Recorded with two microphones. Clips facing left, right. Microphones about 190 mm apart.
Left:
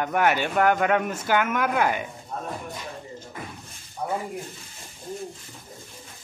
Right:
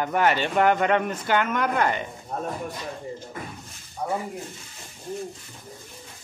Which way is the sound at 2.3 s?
50° right (ahead or behind).